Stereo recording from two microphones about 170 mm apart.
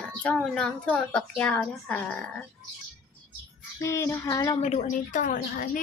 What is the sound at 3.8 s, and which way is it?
Speech, 15° left (ahead or behind).